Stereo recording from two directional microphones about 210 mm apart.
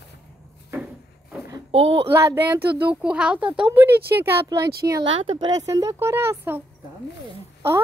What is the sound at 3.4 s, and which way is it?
Speech, 25° right (ahead or behind).